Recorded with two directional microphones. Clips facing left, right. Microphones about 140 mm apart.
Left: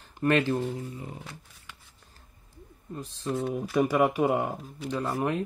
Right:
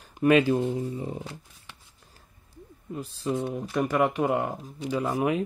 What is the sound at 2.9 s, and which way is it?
Speech, 10° right (ahead or behind).